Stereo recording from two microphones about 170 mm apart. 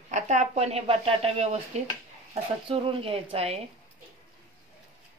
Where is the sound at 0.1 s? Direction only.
45° right (ahead or behind).